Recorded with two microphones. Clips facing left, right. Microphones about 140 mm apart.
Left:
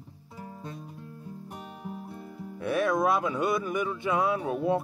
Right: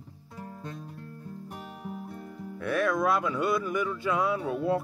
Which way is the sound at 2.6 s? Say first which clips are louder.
Left 1 dB; 20° left (ahead or behind).